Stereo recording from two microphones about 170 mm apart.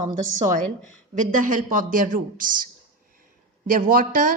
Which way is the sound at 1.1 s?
50° right (ahead or behind).